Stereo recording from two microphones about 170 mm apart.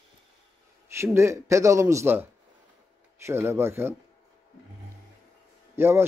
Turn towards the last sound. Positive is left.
turn(degrees=-15)  # may be behind; listen again after turning